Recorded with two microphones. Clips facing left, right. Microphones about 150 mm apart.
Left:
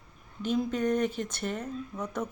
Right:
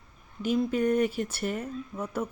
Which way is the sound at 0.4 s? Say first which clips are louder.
Right 2 dB; 5° right (ahead or behind).